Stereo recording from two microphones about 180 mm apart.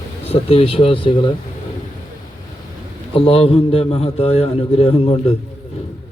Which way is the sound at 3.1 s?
30° left (ahead or behind).